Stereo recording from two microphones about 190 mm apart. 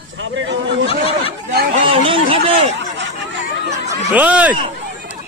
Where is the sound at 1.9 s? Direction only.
30° right (ahead or behind).